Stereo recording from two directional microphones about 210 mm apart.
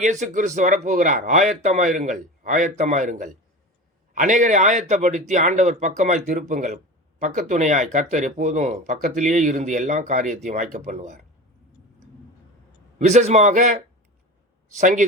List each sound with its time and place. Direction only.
0.0 s speech: 35° right (ahead or behind)
13.0 s speech: 35° right (ahead or behind)